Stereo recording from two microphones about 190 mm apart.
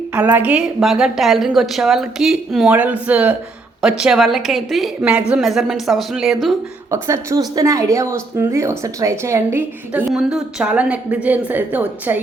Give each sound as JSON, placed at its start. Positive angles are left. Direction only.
{"t": 0.1, "sound": "a woman's voice", "side_deg": -10}
{"t": 6.9, "sound": "speech", "side_deg": -15}